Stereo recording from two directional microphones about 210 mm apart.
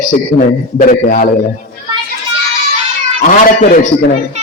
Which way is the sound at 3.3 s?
40° left (ahead or behind).